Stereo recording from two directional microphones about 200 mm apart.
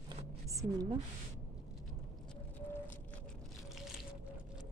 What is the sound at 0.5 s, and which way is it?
Speech, 15° right (ahead or behind).